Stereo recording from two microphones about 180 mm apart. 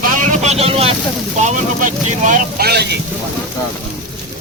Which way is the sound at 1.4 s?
45° right (ahead or behind).